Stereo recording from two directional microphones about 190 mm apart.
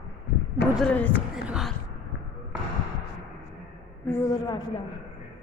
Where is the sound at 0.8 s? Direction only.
5° left (ahead or behind).